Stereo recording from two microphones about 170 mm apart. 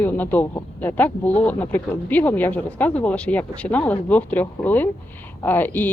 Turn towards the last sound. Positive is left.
turn(degrees=10)  # may be behind; listen again after turning